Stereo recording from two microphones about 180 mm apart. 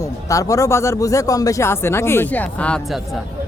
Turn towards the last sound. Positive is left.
turn(degrees=0)  # may be behind; listen again after turning